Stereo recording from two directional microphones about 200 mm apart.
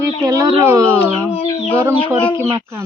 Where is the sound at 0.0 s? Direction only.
15° right (ahead or behind).